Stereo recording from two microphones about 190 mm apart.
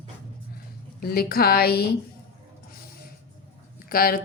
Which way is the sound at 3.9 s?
50° left (ahead or behind).